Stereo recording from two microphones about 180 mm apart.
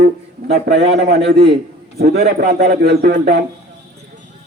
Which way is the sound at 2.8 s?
60° right (ahead or behind).